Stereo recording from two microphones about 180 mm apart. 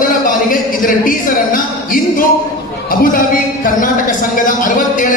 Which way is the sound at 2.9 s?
50° left (ahead or behind).